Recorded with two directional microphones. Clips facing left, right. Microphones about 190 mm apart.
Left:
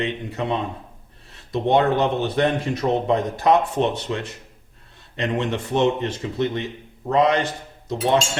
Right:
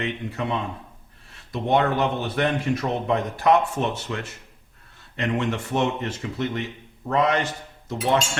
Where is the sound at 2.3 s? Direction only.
25° left (ahead or behind).